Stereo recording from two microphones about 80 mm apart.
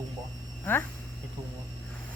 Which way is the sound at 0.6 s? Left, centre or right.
Left.